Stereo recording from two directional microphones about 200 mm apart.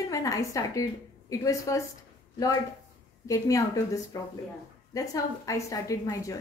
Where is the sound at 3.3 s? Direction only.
15° left (ahead or behind).